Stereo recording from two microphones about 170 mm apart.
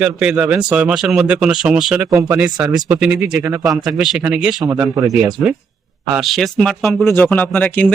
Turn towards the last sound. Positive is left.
turn(degrees=10)  # may be behind; listen again after turning